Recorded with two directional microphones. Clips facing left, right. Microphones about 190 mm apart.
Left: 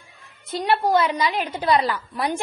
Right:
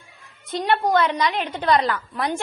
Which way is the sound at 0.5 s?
Centre (ahead or behind).